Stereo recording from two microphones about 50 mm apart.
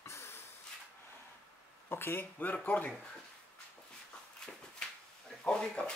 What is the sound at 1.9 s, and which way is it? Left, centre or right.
Speech, left.